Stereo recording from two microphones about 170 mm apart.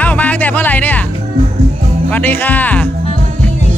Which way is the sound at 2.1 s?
10° left (ahead or behind).